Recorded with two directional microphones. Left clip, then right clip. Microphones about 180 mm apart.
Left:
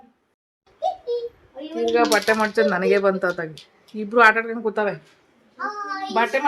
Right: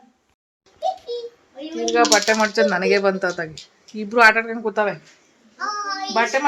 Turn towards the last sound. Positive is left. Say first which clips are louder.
# right 1 dB
turn(degrees=-35)  # may be behind; listen again after turning